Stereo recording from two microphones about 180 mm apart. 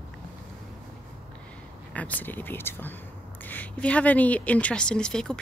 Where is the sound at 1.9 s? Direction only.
10° left (ahead or behind).